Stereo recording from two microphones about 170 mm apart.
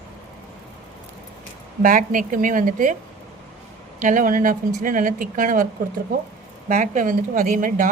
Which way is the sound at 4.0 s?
50° right (ahead or behind).